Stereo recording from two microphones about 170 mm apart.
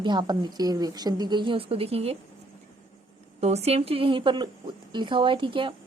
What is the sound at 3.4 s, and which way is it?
Speech, 40° right (ahead or behind).